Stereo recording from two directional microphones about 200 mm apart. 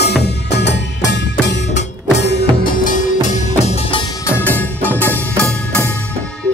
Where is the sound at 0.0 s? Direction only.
55° left (ahead or behind).